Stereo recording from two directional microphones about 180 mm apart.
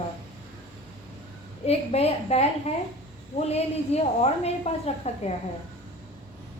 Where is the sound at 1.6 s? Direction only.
35° left (ahead or behind).